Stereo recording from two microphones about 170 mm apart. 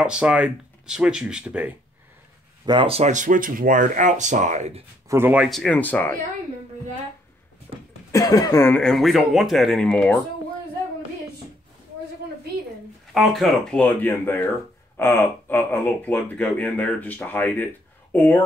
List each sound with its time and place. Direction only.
0.0 s speech: 5° right (ahead or behind)
2.6 s speech: 30° right (ahead or behind)
5.0 s speech: 15° right (ahead or behind); by 6.1 s 10° left (ahead or behind)
7.7 s a sound: 35° right (ahead or behind)
8.1 s speech: 20° left (ahead or behind)
13.1 s speech: centre (ahead or behind)